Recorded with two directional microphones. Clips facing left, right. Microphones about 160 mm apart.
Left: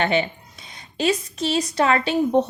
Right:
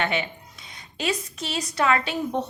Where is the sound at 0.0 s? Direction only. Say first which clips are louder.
Left 5 dB; 30° left (ahead or behind).